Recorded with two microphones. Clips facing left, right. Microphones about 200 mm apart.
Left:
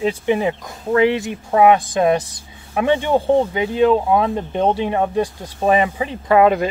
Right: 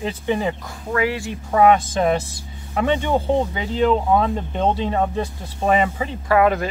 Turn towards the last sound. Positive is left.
turn(degrees=20)  # may be behind; listen again after turning